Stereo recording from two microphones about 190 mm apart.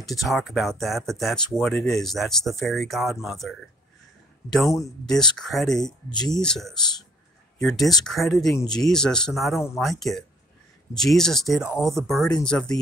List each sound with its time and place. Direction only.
0.2 s speech: centre (ahead or behind)
4.6 s speech: 15° left (ahead or behind)
5.0 s speech: centre (ahead or behind)
6.0 s speech: 25° left (ahead or behind)
6.3 s speech: 5° left (ahead or behind)